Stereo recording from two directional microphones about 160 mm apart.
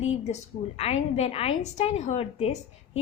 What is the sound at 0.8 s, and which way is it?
A woman's voice, 40° left (ahead or behind).